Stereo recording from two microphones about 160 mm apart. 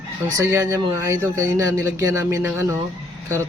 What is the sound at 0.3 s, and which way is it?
Speech, 20° right (ahead or behind).